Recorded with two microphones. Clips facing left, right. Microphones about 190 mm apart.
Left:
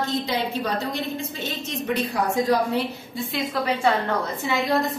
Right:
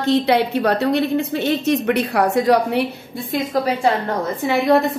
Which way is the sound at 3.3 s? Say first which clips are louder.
Right 6 dB; 40° right (ahead or behind).